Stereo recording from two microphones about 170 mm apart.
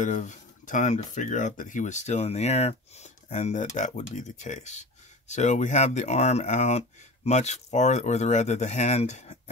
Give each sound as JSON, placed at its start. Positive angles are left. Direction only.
{"t": 0.0, "sound": "speech", "side_deg": 45}